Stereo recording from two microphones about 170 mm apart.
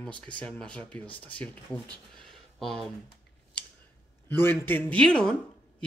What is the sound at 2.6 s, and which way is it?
Speech, centre (ahead or behind).